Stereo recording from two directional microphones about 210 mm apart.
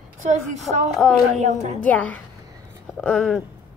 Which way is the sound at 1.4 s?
35° right (ahead or behind).